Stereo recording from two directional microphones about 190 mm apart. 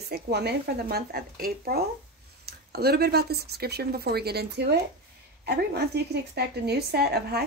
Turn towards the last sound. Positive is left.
turn(degrees=-55)  # may be behind; listen again after turning